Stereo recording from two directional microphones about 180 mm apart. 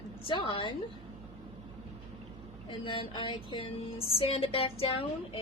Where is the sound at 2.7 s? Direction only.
25° left (ahead or behind).